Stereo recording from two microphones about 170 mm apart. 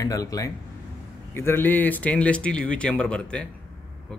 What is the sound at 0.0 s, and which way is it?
Speech, 20° left (ahead or behind).